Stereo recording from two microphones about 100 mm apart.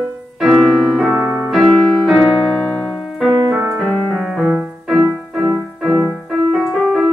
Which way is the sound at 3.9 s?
5° right (ahead or behind).